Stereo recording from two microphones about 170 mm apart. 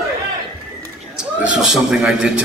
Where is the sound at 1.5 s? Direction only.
5° right (ahead or behind).